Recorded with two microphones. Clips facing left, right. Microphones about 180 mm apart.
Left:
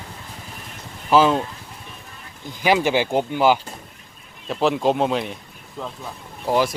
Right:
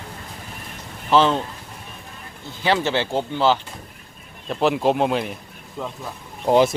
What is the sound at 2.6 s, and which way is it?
Speech, 10° left (ahead or behind).